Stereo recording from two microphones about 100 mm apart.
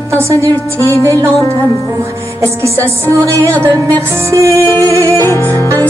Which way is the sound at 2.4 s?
30° right (ahead or behind).